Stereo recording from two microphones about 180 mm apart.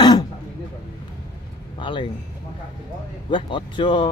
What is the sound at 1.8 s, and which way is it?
Speech, 25° left (ahead or behind).